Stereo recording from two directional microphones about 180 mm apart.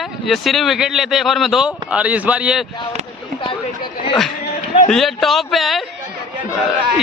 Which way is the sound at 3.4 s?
30° left (ahead or behind).